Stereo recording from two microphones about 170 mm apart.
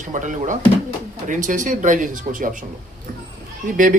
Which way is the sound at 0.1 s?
50° right (ahead or behind).